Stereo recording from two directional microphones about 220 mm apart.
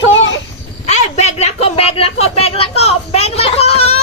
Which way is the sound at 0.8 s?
30° left (ahead or behind).